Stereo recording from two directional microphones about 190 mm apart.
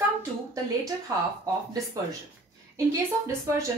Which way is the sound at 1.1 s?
20° right (ahead or behind).